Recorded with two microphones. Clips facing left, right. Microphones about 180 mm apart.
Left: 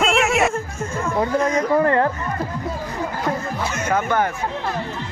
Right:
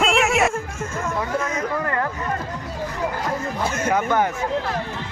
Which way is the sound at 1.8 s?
35° left (ahead or behind).